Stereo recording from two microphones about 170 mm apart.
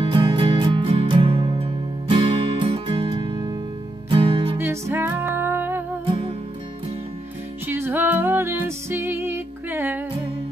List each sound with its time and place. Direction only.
0.1 s music: 30° right (ahead or behind)
4.6 s music: 15° right (ahead or behind)
7.6 s music: 15° right (ahead or behind)